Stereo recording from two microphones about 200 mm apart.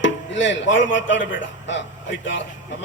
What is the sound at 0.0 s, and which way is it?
Speech, 70° left (ahead or behind).